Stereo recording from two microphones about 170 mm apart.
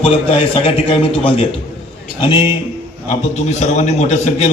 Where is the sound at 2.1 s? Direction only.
30° left (ahead or behind).